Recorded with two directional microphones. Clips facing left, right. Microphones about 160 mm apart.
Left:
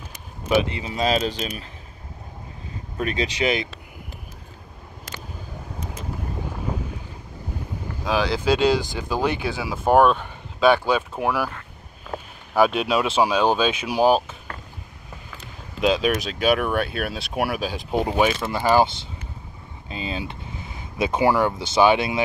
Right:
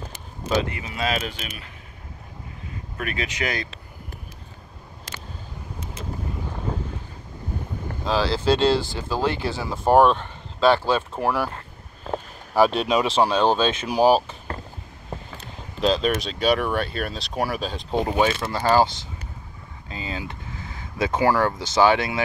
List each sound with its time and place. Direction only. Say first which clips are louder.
0.6 s speech: left 4 dB; 25° left (ahead or behind)
3.0 s speech: left 4 dB; 30° left (ahead or behind)
8.1 s speech: even; 10° left (ahead or behind)
9.6 s speech: even; 5° left (ahead or behind)
11.5 s vehicle: right 1 dB; 30° right (ahead or behind)
12.5 s speech: even; 5° left (ahead or behind)
15.8 s speech: left 1 dB; 5° left (ahead or behind)
19.9 s speech: left 2 dB; 20° left (ahead or behind)